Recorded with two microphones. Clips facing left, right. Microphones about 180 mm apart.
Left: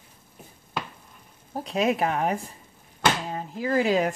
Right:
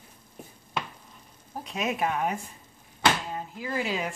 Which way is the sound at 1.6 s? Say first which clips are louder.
Left 5 dB; 30° left (ahead or behind).